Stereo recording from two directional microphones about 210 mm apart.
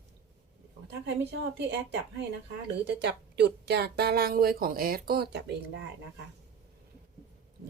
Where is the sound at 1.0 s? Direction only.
55° right (ahead or behind).